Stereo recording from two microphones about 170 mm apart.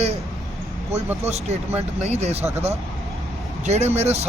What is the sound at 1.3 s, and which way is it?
Speech, 40° right (ahead or behind).